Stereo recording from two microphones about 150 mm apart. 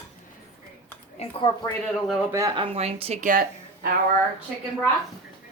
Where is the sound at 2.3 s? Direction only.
20° right (ahead or behind).